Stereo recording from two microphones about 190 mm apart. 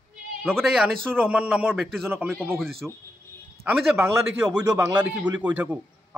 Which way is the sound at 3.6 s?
15° right (ahead or behind).